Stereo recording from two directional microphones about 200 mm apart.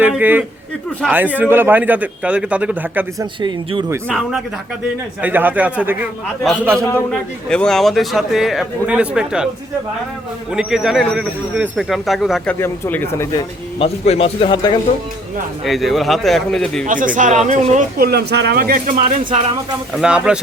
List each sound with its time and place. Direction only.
0.0 s speech: 10° right (ahead or behind)
3.4 s speech: 25° right (ahead or behind)
4.1 s a man's voice: centre (ahead or behind)
10.5 s a man's voice: 5° right (ahead or behind)
12.5 s speech: 10° left (ahead or behind)
13.7 s a man's voice: 30° left (ahead or behind)
15.6 s a man's voice: centre (ahead or behind)
16.8 s speech: 40° right (ahead or behind)
19.9 s a man's voice: 5° right (ahead or behind)